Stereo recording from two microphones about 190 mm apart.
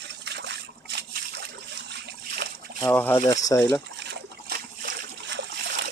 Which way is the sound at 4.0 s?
60° right (ahead or behind).